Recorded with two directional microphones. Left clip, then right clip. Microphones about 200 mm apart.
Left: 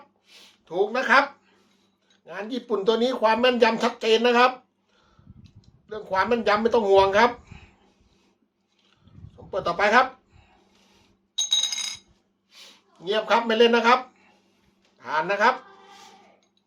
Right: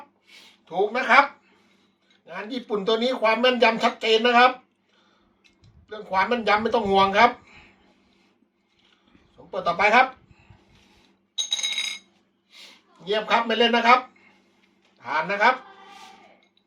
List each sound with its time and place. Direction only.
2.2 s speech: 50° left (ahead or behind)
5.9 s speech: 50° left (ahead or behind)
9.5 s speech: 55° left (ahead or behind)
11.3 s a sound: 25° left (ahead or behind)
13.1 s speech: 55° left (ahead or behind)
15.0 s speech: 50° left (ahead or behind)